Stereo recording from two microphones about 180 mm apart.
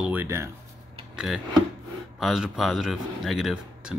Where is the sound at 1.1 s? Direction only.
5° right (ahead or behind).